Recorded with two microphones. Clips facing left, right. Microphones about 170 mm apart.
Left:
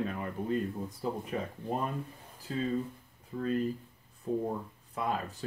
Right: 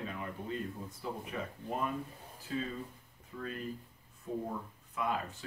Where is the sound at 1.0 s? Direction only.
40° left (ahead or behind).